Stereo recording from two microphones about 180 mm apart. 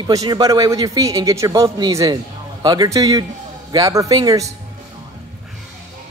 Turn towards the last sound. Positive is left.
turn(degrees=-20)  # may be behind; listen again after turning